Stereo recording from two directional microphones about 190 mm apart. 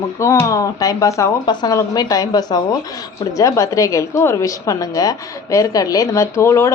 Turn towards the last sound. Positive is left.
turn(degrees=15)  # may be behind; listen again after turning